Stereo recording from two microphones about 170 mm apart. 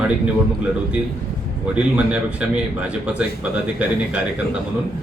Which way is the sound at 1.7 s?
5° right (ahead or behind).